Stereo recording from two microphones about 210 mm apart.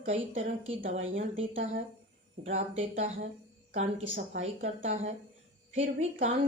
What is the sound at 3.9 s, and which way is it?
Speech, 65° right (ahead or behind).